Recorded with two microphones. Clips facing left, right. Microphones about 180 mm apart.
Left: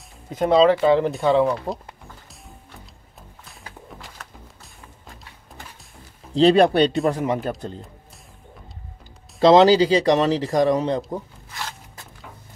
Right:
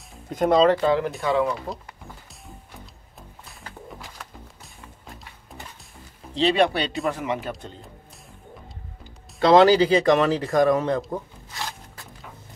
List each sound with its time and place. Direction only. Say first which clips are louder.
0.3 s speech: left 2 dB; centre (ahead or behind)
0.8 s speech: left 4 dB; 20° left (ahead or behind)
1.4 s speech: left 4 dB; centre (ahead or behind)
6.3 s speech: left 5 dB; 40° left (ahead or behind)
6.8 s speech: left 9 dB; centre (ahead or behind)
7.1 s speech: left 4 dB; 35° left (ahead or behind)
9.4 s speech: left 2 dB; 20° left (ahead or behind)